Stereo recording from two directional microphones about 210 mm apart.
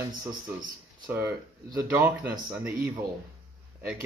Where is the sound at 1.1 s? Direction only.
10° right (ahead or behind).